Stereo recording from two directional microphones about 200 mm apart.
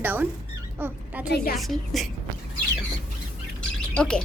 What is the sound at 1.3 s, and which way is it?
Speech, 55° left (ahead or behind).